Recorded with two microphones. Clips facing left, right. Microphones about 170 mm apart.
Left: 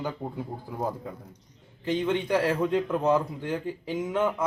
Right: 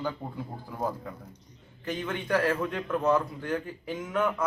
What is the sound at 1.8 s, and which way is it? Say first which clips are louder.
A man's voice: left 7 dB; 20° left (ahead or behind).